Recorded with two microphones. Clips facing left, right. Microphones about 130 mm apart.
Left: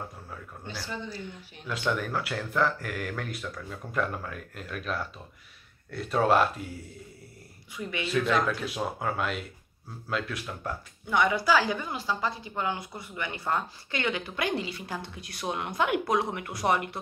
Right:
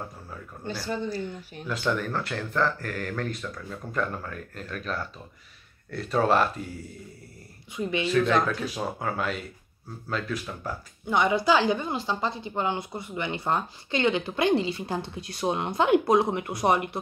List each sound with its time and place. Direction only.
0.8 s speech: 45° right (ahead or behind)
1.7 s speech: centre (ahead or behind)
7.7 s a woman's voice: 25° right (ahead or behind)
8.1 s speech: centre (ahead or behind)
11.1 s a woman's voice: 25° right (ahead or behind)